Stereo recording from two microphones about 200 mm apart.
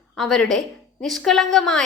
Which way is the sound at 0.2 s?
Centre (ahead or behind).